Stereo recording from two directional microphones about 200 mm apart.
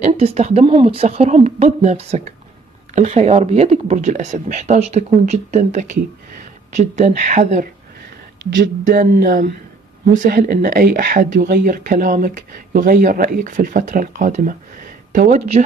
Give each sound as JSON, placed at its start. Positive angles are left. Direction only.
{"t": 0.0, "sound": "speech", "side_deg": -30}
{"t": 8.8, "sound": "speech", "side_deg": -40}